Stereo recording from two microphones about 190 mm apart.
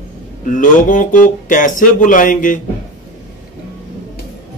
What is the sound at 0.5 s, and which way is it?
Speech, 45° left (ahead or behind).